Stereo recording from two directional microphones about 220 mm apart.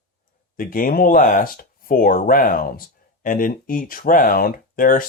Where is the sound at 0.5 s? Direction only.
40° left (ahead or behind).